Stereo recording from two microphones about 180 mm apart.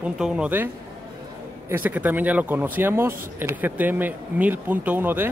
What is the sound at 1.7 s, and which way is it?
Speech, 10° right (ahead or behind).